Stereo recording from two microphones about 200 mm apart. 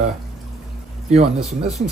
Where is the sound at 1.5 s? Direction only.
35° right (ahead or behind).